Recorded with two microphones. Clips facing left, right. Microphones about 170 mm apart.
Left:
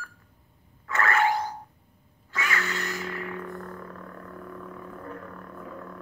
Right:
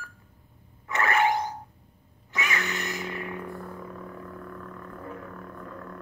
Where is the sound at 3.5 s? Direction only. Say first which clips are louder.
Even; 5° right (ahead or behind).